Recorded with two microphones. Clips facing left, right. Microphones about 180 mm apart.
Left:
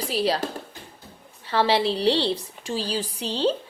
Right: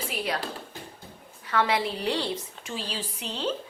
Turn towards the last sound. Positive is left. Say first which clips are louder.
# left 7 dB
turn(degrees=35)  # may be behind; listen again after turning